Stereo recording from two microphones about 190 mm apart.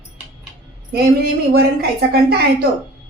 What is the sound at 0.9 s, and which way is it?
A woman's voice, 55° right (ahead or behind).